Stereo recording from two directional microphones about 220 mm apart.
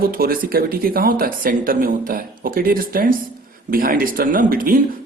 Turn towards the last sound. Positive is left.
turn(degrees=-40)  # may be behind; listen again after turning